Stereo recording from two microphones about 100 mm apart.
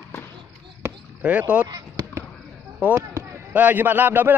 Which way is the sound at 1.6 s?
40° right (ahead or behind).